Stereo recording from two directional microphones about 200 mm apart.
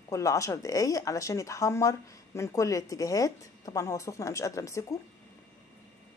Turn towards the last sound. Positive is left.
turn(degrees=15)  # may be behind; listen again after turning